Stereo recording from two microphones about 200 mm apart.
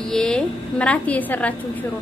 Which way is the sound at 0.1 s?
5° left (ahead or behind).